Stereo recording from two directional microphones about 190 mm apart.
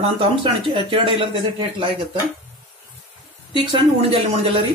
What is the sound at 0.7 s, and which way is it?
Speech, 25° right (ahead or behind).